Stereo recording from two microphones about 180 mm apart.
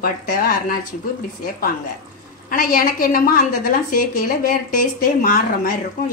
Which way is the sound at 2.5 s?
50° left (ahead or behind).